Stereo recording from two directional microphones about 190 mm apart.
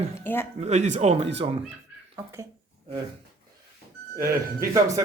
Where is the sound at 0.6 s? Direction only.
35° right (ahead or behind).